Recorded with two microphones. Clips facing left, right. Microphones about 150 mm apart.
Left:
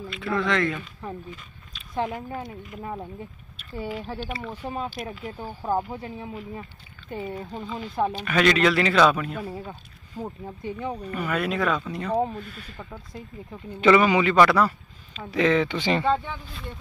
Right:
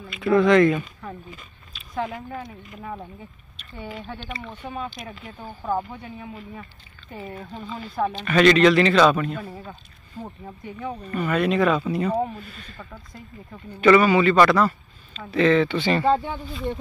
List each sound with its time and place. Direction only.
0.1 s speech: 15° right (ahead or behind)
1.3 s a sound: 5° right (ahead or behind)
2.0 s speech: centre (ahead or behind)
3.5 s a sound: 5° left (ahead or behind)
4.2 s speech: 10° left (ahead or behind)
7.2 s speech: 15° left (ahead or behind); by 12.5 s 5° right (ahead or behind)
12.5 s speech: 15° left (ahead or behind)